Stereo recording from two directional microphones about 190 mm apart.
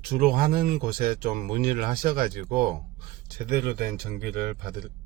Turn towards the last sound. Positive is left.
turn(degrees=-55)  # may be behind; listen again after turning